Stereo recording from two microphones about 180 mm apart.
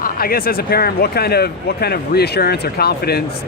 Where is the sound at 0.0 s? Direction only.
55° left (ahead or behind).